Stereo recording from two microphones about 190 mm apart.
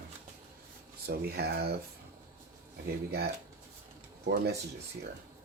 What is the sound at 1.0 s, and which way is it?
Speech, 55° right (ahead or behind).